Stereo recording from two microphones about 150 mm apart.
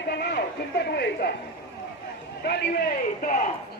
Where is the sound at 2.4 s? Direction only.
90° left.